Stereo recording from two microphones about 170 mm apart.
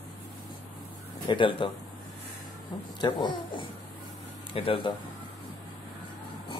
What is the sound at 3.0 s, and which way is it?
Speech, 30° left (ahead or behind).